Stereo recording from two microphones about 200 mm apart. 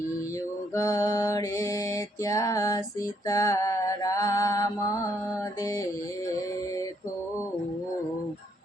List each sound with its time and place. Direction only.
0.8 s music: 15° left (ahead or behind)
3.2 s mantra: 15° left (ahead or behind)